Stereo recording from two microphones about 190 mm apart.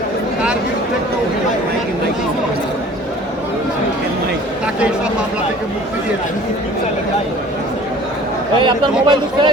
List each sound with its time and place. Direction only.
8.6 s speech: 25° right (ahead or behind)